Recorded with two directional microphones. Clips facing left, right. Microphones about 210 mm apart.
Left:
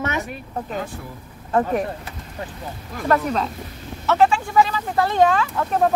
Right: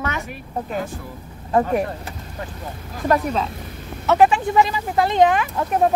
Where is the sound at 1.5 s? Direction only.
15° right (ahead or behind).